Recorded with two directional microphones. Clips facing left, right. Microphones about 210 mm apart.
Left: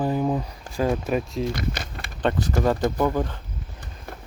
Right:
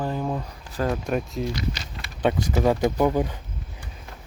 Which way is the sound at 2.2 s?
10° right (ahead or behind).